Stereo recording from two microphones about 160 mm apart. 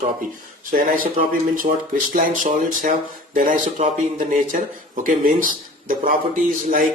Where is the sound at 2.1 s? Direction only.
55° right (ahead or behind).